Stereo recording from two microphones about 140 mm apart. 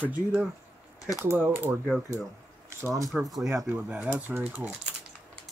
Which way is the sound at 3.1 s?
Centre (ahead or behind).